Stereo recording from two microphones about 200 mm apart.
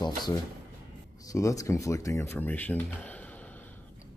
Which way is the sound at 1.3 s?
15° left (ahead or behind).